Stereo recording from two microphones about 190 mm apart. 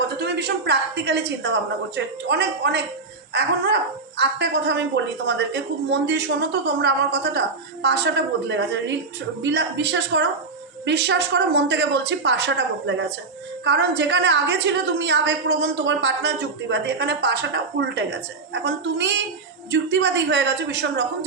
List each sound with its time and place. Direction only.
0.2 s a woman's voice: 60° right (ahead or behind)